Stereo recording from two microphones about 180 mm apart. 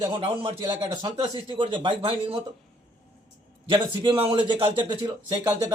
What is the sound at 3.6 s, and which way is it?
Speech, 25° right (ahead or behind).